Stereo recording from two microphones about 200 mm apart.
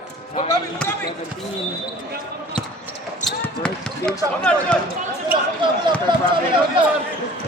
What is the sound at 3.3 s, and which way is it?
Speech, 5° left (ahead or behind).